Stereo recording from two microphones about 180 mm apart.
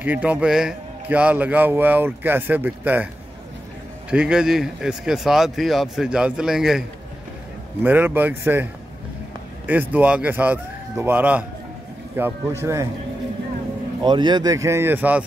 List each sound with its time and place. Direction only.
0.0 s a man's voice: 10° right (ahead or behind)
4.1 s speech: 5° right (ahead or behind)
7.8 s a man's voice: 10° right (ahead or behind)
9.7 s a man's voice: 10° right (ahead or behind)
14.0 s a man's voice: 25° right (ahead or behind); by 15.2 s 10° right (ahead or behind)